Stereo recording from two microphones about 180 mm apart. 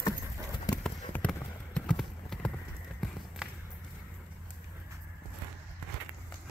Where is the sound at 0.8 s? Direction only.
5° left (ahead or behind).